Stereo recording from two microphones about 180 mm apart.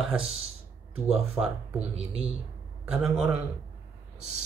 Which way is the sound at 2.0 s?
35° right (ahead or behind).